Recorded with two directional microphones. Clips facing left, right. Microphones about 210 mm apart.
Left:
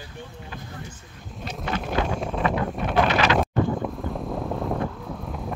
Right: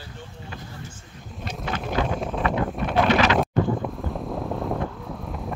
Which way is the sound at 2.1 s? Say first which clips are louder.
Even; centre (ahead or behind).